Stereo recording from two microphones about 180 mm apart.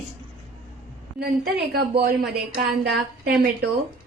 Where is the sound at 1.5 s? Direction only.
60° right (ahead or behind).